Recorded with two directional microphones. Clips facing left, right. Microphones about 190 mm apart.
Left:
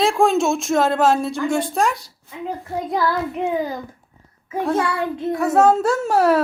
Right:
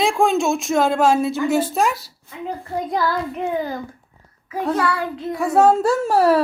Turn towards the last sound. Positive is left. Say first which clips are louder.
# right 1 dB
turn(degrees=0)  # may be behind; listen again after turning